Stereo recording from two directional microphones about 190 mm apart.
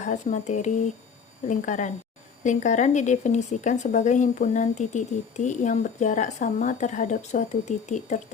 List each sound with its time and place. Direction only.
0.0 s speech: 40° left (ahead or behind)